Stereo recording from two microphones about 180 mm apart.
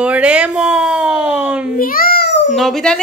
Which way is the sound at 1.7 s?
50° left (ahead or behind).